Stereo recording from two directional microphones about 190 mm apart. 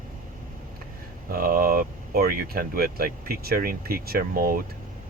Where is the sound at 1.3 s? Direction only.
50° right (ahead or behind).